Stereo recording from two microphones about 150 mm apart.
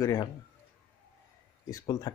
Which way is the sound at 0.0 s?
25° left (ahead or behind).